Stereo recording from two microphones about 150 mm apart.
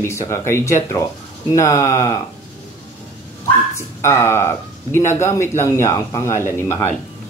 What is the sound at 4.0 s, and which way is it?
Speech, 20° left (ahead or behind).